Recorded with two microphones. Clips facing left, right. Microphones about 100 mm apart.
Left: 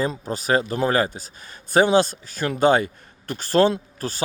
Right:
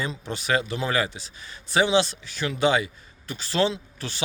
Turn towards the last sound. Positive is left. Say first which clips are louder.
# left 6 dB
turn(degrees=45)  # may be behind; listen again after turning